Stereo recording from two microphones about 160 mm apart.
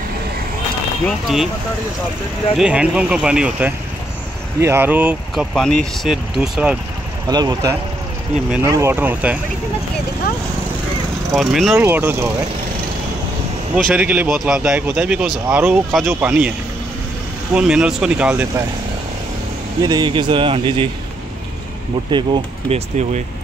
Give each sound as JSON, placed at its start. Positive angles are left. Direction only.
{"t": 1.0, "sound": "speech", "side_deg": 0}
{"t": 2.5, "sound": "speech", "side_deg": -5}
{"t": 5.3, "sound": "speech", "side_deg": 0}
{"t": 7.2, "sound": "speech", "side_deg": -25}
{"t": 11.3, "sound": "speech", "side_deg": 0}
{"t": 11.7, "sound": "speech", "side_deg": -15}
{"t": 13.9, "sound": "speech", "side_deg": -10}
{"t": 17.6, "sound": "speech", "side_deg": -5}
{"t": 19.8, "sound": "speech", "side_deg": -25}
{"t": 22.1, "sound": "speech", "side_deg": -30}